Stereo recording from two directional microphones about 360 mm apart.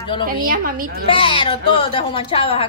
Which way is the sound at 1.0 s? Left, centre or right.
Centre.